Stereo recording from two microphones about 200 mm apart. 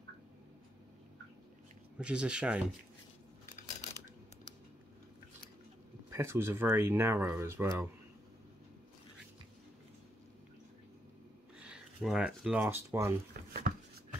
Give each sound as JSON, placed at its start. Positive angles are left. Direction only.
{"t": 2.0, "sound": "speech", "side_deg": -5}
{"t": 6.0, "sound": "speech", "side_deg": -10}
{"t": 11.6, "sound": "speech", "side_deg": -5}
{"t": 13.3, "sound": "a sound", "side_deg": -50}